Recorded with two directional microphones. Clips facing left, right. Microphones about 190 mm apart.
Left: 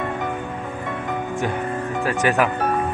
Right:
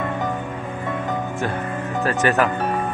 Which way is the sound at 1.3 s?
15° left (ahead or behind).